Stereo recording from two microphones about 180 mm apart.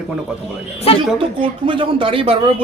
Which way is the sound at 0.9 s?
35° left (ahead or behind).